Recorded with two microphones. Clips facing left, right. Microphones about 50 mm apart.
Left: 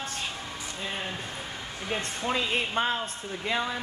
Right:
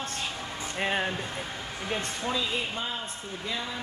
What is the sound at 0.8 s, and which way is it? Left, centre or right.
Speech, right.